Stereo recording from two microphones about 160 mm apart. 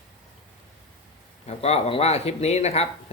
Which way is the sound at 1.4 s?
40° left (ahead or behind).